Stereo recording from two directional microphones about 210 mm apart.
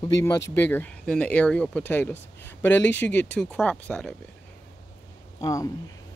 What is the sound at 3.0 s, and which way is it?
Speech, 10° left (ahead or behind).